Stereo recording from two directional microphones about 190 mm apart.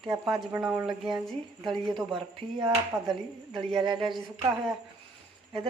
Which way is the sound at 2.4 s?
25° right (ahead or behind).